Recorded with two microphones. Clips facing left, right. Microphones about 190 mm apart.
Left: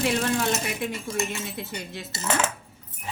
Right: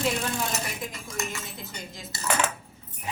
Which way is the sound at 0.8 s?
70° left (ahead or behind).